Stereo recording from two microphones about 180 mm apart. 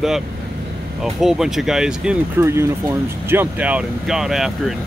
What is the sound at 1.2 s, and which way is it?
Speech, centre (ahead or behind).